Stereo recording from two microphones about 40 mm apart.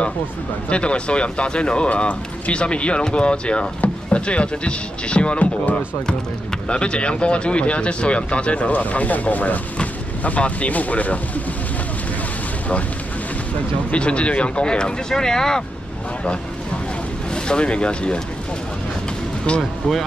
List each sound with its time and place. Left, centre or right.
0.7 s speech: left
13.9 s speech: left
17.3 s speech: left